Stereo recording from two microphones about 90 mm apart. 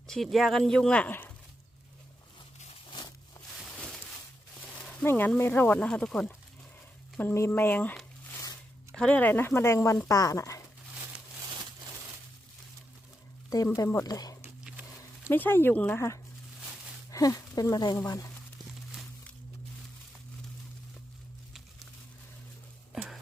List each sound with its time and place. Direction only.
0.1 s speech: centre (ahead or behind)
3.8 s a sound: 10° left (ahead or behind)
5.0 s speech: 25° left (ahead or behind)
7.2 s speech: 25° left (ahead or behind)
9.0 s speech: 15° left (ahead or behind); by 10.6 s 35° left (ahead or behind)
13.7 s speech: 35° left (ahead or behind)
15.3 s speech: 25° left (ahead or behind)
16.0 s speech: 30° left (ahead or behind)